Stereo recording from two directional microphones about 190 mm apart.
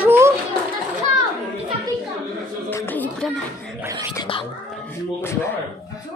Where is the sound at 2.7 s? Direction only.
10° left (ahead or behind).